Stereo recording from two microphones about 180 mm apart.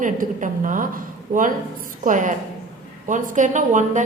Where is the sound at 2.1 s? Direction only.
45° right (ahead or behind).